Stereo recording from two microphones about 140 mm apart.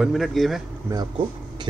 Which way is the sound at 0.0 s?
Centre (ahead or behind).